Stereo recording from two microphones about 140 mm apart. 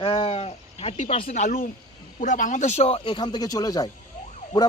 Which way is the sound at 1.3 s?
70° left (ahead or behind).